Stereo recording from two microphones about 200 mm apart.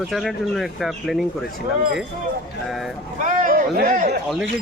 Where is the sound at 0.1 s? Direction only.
Centre (ahead or behind).